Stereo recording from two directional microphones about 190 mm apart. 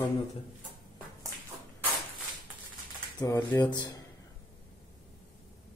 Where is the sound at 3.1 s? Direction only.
20° left (ahead or behind).